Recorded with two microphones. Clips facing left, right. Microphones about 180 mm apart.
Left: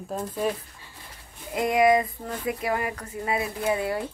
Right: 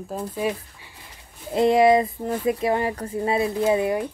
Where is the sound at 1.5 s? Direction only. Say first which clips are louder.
Right 4 dB; 30° right (ahead or behind).